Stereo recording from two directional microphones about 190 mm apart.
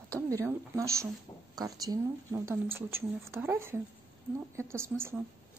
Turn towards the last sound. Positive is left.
turn(degrees=-10)  # may be behind; listen again after turning